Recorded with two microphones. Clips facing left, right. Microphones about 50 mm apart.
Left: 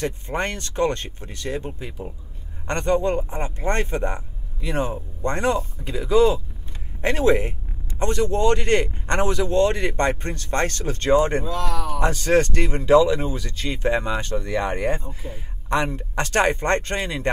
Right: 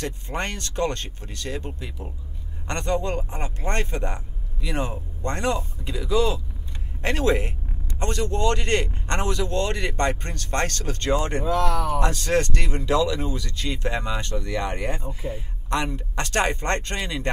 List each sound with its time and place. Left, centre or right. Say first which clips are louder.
0.0 s speech: left 4 dB; left
11.4 s speech: right 3 dB; right
12.0 s speech: left 8 dB; left